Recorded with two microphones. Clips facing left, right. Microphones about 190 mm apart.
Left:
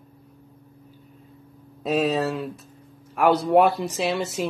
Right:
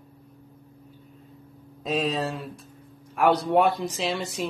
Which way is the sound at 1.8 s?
5° left (ahead or behind).